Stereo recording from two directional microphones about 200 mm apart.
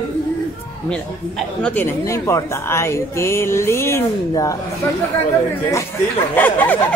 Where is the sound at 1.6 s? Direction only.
10° left (ahead or behind).